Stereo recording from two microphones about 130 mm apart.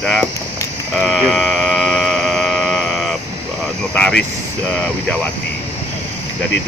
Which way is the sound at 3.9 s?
5° left (ahead or behind).